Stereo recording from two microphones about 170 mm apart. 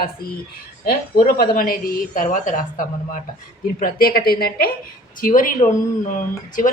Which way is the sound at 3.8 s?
60° left (ahead or behind).